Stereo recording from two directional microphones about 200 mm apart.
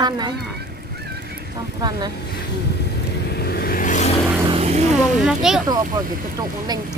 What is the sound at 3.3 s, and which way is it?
Vehicle, 50° left (ahead or behind).